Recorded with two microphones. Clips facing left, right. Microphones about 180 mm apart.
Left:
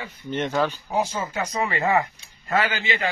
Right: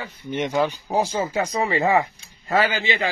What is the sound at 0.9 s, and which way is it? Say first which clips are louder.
Speech: right 3 dB; 35° right (ahead or behind).